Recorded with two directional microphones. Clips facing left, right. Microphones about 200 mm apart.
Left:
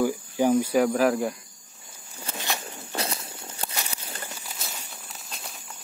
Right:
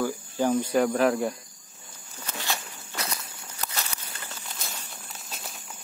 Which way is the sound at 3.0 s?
30° left (ahead or behind).